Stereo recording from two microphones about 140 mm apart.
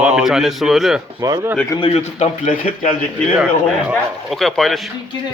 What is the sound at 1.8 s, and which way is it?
Speech, 45° left (ahead or behind).